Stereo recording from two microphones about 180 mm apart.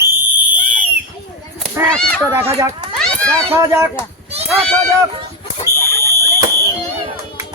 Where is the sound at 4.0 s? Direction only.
35° right (ahead or behind).